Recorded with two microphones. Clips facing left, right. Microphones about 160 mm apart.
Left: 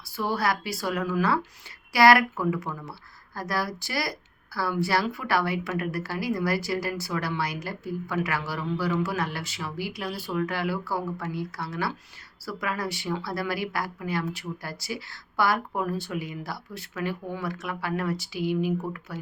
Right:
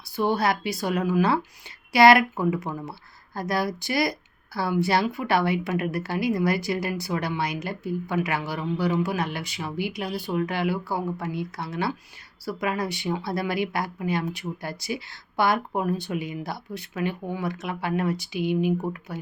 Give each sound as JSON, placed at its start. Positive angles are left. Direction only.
{"t": 0.2, "sound": "a woman's voice", "side_deg": -20}